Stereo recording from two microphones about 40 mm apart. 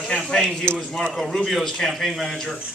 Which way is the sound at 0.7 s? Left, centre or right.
Right.